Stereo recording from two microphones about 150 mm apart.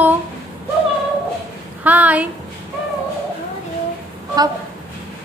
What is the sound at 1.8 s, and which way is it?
Speech, 10° right (ahead or behind).